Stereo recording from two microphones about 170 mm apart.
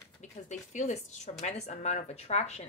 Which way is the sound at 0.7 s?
40° left (ahead or behind).